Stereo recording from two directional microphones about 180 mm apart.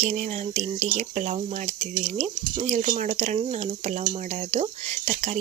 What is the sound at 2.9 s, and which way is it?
Speech, 50° right (ahead or behind).